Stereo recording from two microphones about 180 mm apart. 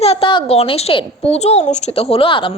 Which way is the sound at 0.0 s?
30° left (ahead or behind).